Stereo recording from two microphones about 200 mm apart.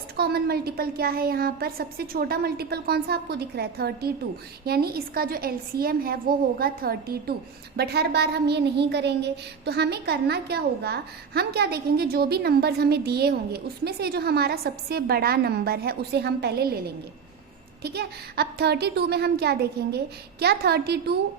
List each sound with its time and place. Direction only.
0.2 s a woman's voice: 50° right (ahead or behind)
17.8 s a woman's voice: 55° right (ahead or behind)